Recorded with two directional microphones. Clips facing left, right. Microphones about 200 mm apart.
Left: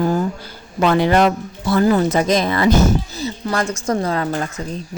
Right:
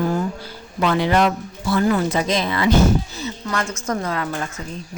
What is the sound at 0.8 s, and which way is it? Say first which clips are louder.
Speech: left 3 dB; 45° left (ahead or behind).